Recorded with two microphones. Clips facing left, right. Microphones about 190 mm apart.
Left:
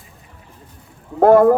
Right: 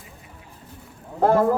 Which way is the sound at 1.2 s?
55° left (ahead or behind).